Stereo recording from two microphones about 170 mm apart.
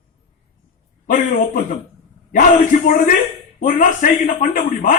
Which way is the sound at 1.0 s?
50° left (ahead or behind).